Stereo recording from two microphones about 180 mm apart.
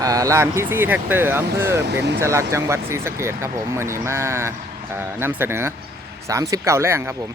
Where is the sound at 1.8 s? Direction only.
70° right (ahead or behind).